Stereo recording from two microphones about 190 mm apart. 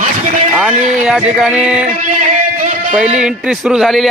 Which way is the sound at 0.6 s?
5° right (ahead or behind).